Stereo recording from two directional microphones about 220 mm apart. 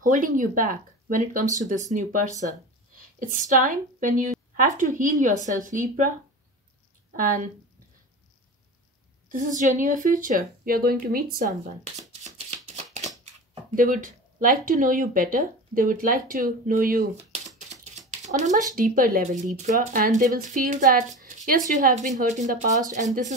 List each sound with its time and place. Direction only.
0.0 s speech: 35° right (ahead or behind)
7.2 s speech: 35° right (ahead or behind)
9.3 s a woman's voice: 35° right (ahead or behind)